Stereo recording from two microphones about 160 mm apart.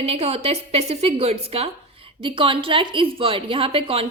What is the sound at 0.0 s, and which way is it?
A woman's voice, 40° right (ahead or behind).